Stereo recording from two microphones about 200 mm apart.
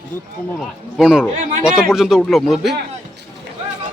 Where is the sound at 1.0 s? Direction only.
5° right (ahead or behind).